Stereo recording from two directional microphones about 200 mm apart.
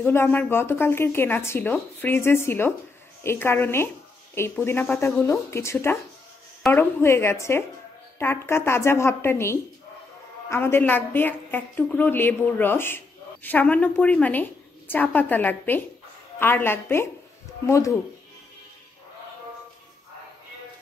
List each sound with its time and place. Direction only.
0.0 s a woman's voice: 10° left (ahead or behind)